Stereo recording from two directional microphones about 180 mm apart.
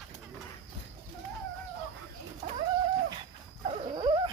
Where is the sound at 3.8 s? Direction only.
30° right (ahead or behind).